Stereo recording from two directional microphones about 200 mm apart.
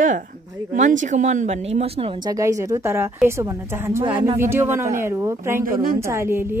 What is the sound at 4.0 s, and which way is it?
Speech, 25° right (ahead or behind).